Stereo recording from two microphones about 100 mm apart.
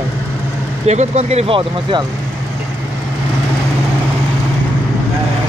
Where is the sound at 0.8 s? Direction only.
90° right.